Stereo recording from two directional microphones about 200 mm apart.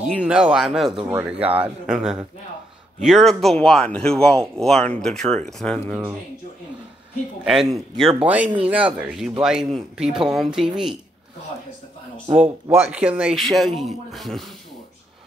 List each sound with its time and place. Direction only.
0.2 s speech: 5° right (ahead or behind)
7.4 s speech: centre (ahead or behind)
7.9 s speech: 30° right (ahead or behind)
8.6 s speech: 5° right (ahead or behind)
12.4 s speech: 5° right (ahead or behind)